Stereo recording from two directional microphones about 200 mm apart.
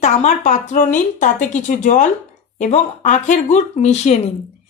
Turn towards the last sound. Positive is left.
turn(degrees=35)  # may be behind; listen again after turning